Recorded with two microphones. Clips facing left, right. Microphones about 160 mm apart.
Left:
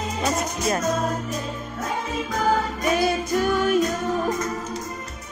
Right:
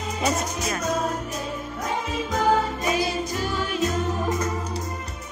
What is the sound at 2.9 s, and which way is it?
Music, 55° left (ahead or behind).